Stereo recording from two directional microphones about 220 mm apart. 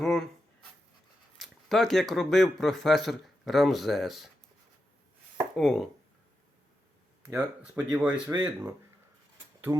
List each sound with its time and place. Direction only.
0.0 s a sound: centre (ahead or behind)
1.4 s speech: centre (ahead or behind)
5.5 s speech: centre (ahead or behind)
7.3 s speech: 10° right (ahead or behind)
8.3 s speech: 15° right (ahead or behind)